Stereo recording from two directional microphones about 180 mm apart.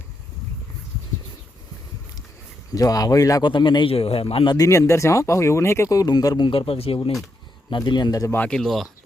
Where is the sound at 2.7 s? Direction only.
20° left (ahead or behind).